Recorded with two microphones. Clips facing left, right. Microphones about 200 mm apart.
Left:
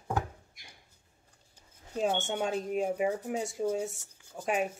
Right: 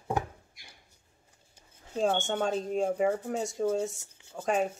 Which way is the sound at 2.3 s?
10° left (ahead or behind).